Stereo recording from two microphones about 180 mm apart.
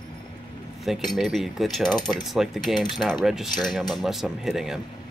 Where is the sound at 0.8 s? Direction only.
Centre (ahead or behind).